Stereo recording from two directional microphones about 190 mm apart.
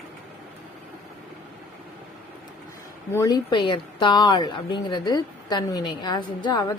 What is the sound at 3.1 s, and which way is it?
A woman's voice, 20° left (ahead or behind).